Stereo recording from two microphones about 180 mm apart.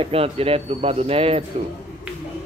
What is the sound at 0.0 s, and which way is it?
Speech, 30° right (ahead or behind).